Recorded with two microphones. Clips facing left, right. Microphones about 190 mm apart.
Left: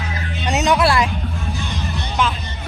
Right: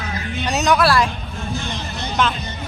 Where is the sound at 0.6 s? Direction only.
25° left (ahead or behind).